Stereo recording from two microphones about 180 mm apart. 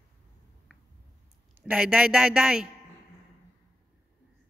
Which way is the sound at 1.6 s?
5° right (ahead or behind).